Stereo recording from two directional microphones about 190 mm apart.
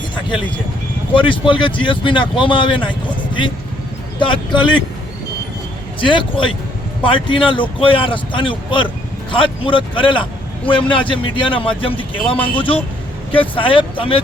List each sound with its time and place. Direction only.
1.1 s speech: 25° left (ahead or behind)
4.2 s speech: 25° left (ahead or behind)
6.1 s speech: 25° left (ahead or behind)